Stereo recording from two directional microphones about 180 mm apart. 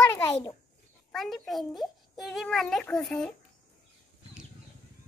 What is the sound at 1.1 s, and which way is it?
A child's voice, centre (ahead or behind).